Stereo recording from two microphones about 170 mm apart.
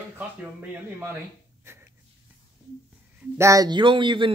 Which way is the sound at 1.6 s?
15° right (ahead or behind).